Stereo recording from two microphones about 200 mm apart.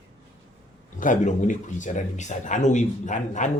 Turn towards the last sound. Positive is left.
turn(degrees=40)  # may be behind; listen again after turning